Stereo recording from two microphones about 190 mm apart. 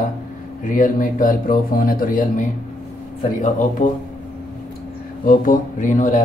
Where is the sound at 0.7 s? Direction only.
45° left (ahead or behind).